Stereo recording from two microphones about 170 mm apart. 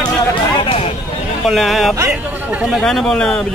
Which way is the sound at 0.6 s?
30° left (ahead or behind).